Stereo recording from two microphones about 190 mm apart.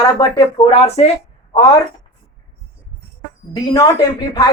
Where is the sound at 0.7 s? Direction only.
35° left (ahead or behind).